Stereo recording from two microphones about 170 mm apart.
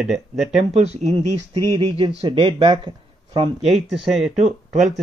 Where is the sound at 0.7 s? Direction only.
40° right (ahead or behind).